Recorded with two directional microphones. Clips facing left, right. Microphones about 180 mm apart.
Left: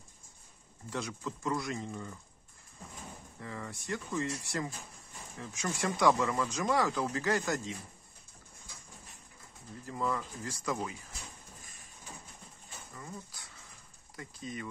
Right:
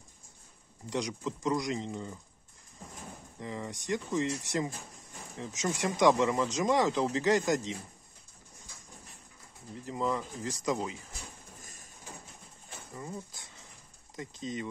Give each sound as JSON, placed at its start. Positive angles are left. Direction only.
{"t": 0.8, "sound": "speech", "side_deg": -15}
{"t": 3.3, "sound": "speech", "side_deg": -20}
{"t": 9.8, "sound": "speech", "side_deg": -20}
{"t": 11.6, "sound": "a sound", "side_deg": -40}
{"t": 12.9, "sound": "speech", "side_deg": -25}